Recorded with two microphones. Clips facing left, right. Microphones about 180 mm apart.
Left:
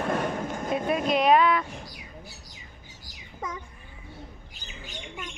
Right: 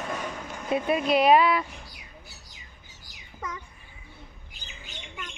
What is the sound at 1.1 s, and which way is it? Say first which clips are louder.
Speech: right 1 dB; 5° right (ahead or behind).